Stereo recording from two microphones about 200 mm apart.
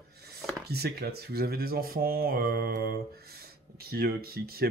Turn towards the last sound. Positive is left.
turn(degrees=-50)  # may be behind; listen again after turning